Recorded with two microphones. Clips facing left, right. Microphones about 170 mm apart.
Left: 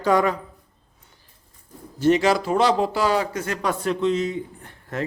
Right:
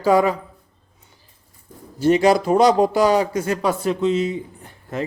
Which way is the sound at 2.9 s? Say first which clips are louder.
Right 5 dB; 15° right (ahead or behind).